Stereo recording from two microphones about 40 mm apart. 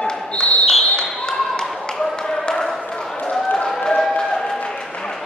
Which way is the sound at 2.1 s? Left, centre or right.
Centre.